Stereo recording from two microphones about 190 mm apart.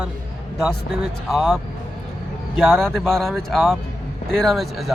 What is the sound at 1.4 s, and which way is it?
Speech, centre (ahead or behind).